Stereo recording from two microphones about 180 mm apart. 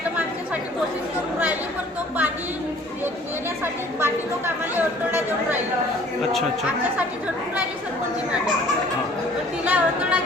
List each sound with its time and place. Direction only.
3.6 s chatter: 10° right (ahead or behind)
9.6 s chatter: 5° right (ahead or behind)